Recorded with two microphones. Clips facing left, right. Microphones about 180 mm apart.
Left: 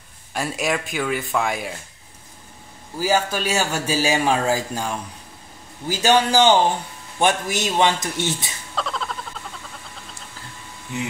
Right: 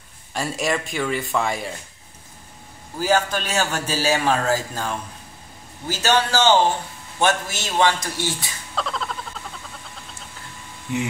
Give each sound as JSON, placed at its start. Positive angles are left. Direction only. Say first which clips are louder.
{"t": 0.3, "sound": "speech", "louder": "even", "side_deg": 0}
{"t": 3.0, "sound": "a man's voice", "louder": "even", "side_deg": 10}
{"t": 8.7, "sound": "a sound", "louder": "even", "side_deg": 0}